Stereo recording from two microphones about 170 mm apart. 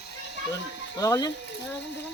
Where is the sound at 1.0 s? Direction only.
20° left (ahead or behind).